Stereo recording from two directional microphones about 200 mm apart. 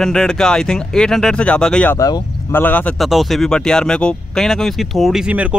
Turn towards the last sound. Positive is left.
turn(degrees=-5)  # may be behind; listen again after turning